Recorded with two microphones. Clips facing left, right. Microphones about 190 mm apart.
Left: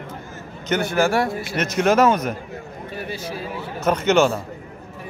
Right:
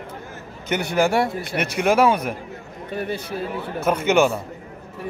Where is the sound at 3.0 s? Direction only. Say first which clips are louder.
Right 4 dB; 55° right (ahead or behind).